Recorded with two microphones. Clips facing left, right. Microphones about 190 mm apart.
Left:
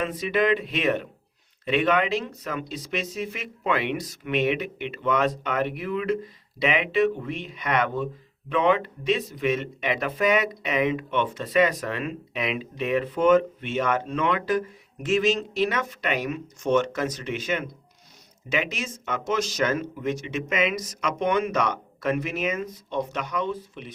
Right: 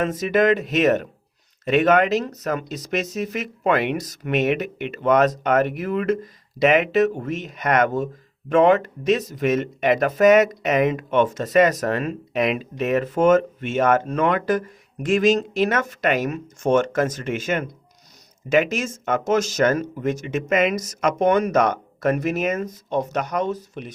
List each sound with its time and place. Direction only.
0.0 s speech: 45° right (ahead or behind)